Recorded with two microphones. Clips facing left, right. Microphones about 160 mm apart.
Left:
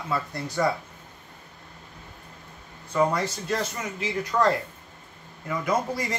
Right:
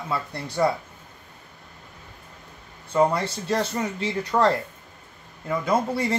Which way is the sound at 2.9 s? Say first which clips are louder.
Right 3 dB; 30° right (ahead or behind).